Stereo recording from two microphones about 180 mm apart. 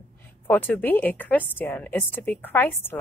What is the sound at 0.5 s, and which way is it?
A woman's voice, 10° left (ahead or behind).